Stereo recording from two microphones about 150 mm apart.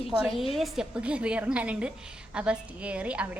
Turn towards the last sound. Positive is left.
turn(degrees=-10)  # may be behind; listen again after turning